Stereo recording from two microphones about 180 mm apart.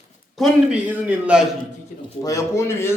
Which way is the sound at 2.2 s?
20° left (ahead or behind).